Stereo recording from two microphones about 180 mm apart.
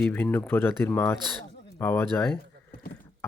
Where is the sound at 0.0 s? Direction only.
10° left (ahead or behind).